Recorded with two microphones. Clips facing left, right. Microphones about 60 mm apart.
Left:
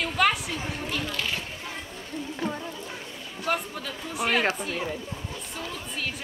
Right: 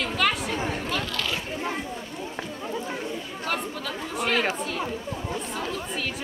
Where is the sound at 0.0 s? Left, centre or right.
Centre.